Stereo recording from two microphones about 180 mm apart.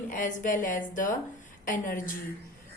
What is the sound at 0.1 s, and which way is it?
Speech, 45° left (ahead or behind).